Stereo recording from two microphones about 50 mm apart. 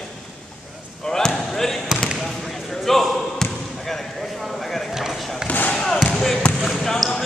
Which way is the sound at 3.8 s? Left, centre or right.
Centre.